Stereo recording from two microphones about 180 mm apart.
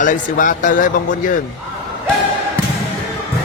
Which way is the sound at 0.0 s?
45° left (ahead or behind).